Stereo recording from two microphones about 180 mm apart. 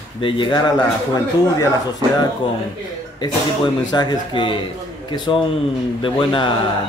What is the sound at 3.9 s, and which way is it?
Speech, 25° left (ahead or behind).